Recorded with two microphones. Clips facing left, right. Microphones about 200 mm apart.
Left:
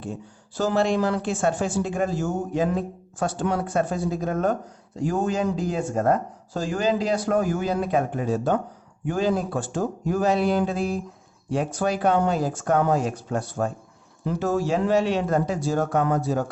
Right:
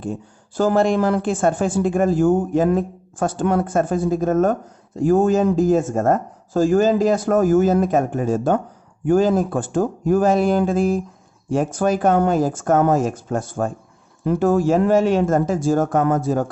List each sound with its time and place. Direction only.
0.0 s a woman's voice: 50° right (ahead or behind)